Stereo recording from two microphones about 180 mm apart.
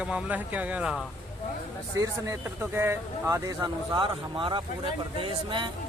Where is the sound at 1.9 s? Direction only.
15° right (ahead or behind).